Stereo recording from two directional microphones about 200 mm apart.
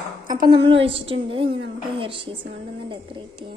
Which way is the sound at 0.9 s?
25° right (ahead or behind).